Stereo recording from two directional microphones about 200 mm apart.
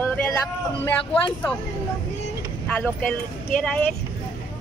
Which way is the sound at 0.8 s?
5° left (ahead or behind).